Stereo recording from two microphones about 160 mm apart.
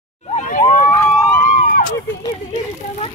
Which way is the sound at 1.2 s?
50° left (ahead or behind).